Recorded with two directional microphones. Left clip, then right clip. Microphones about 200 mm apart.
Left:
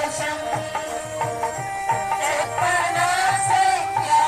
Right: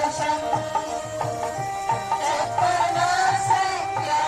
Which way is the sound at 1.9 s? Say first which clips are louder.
Left 2 dB; 10° left (ahead or behind).